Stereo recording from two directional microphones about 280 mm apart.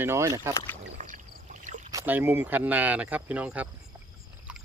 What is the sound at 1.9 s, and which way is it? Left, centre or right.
Speech, centre.